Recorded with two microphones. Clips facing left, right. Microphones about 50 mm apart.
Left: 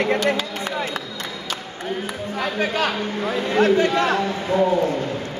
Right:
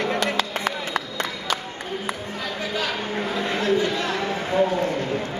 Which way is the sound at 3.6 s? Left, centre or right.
Left.